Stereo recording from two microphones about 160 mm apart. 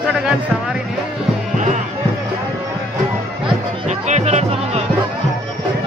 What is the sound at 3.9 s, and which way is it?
Music, 45° right (ahead or behind).